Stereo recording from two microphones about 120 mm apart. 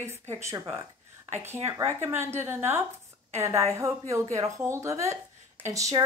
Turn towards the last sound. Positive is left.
turn(degrees=-25)  # may be behind; listen again after turning